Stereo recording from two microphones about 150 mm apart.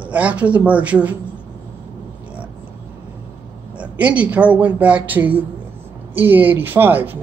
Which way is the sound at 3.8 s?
10° right (ahead or behind).